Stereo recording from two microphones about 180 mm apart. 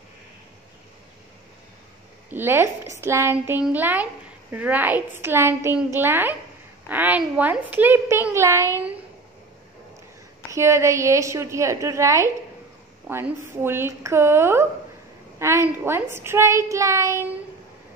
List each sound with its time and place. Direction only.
2.2 s a woman's voice: 10° right (ahead or behind)
10.5 s a woman's voice: 15° right (ahead or behind)